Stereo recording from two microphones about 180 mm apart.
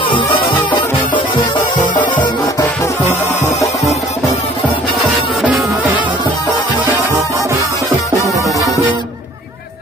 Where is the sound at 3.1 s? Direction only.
40° left (ahead or behind).